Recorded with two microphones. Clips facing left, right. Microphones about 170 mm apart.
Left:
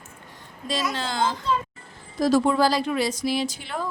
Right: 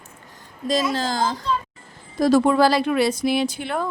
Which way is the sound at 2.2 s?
60° right (ahead or behind).